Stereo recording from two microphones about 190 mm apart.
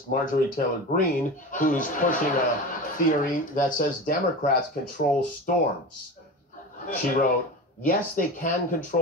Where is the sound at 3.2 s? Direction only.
45° left (ahead or behind).